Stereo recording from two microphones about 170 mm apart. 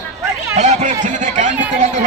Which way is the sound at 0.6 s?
40° right (ahead or behind).